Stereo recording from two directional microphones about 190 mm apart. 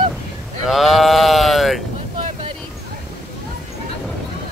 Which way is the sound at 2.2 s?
40° right (ahead or behind).